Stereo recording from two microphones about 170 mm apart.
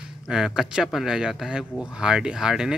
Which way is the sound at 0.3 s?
5° right (ahead or behind).